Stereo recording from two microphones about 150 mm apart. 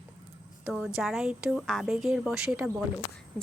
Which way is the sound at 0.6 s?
5° right (ahead or behind).